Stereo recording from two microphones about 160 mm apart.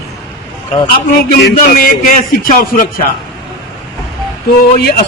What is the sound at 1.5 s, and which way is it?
Speech, 60° left (ahead or behind).